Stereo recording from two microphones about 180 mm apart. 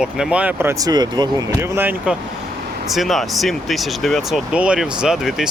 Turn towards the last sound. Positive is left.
turn(degrees=-5)  # may be behind; listen again after turning